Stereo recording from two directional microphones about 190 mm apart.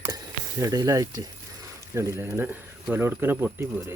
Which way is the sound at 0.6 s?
15° right (ahead or behind).